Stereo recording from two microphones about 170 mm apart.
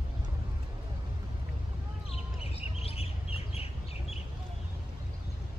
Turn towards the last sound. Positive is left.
turn(degrees=35)  # may be behind; listen again after turning